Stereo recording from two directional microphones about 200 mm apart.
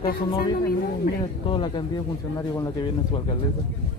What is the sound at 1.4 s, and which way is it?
Speech, 25° left (ahead or behind).